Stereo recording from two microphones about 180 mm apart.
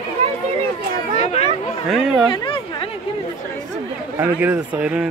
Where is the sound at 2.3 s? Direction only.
30° left (ahead or behind).